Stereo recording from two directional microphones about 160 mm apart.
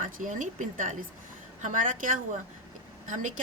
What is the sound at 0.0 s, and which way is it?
A woman's voice, 55° right (ahead or behind).